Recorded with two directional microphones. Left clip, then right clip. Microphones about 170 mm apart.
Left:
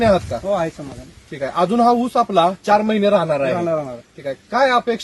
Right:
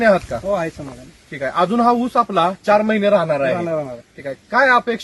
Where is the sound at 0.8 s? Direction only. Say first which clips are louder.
Even; 10° right (ahead or behind).